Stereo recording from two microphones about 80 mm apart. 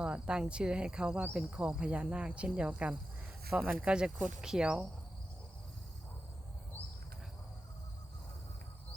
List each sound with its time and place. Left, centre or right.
0.0 s speech: centre